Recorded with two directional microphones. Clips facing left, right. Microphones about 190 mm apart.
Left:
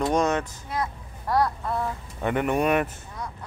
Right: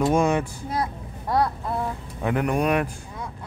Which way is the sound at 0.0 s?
10° right (ahead or behind).